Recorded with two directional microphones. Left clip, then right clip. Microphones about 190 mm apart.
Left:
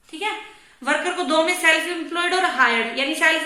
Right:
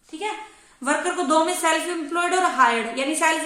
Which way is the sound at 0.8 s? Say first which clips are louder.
Left 1 dB; 60° right (ahead or behind).